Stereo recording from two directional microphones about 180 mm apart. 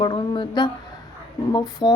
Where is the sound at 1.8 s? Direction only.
25° left (ahead or behind).